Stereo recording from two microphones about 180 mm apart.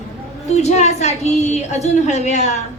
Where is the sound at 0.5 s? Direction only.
40° left (ahead or behind).